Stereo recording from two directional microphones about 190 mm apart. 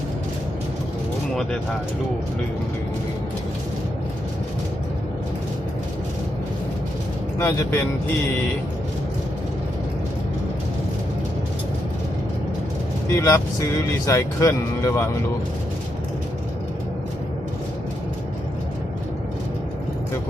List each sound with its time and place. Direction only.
7.3 s speech: 15° left (ahead or behind)
13.1 s speech: 15° left (ahead or behind)